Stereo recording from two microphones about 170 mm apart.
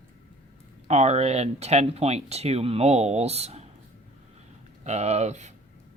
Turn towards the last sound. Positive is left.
turn(degrees=-40)  # may be behind; listen again after turning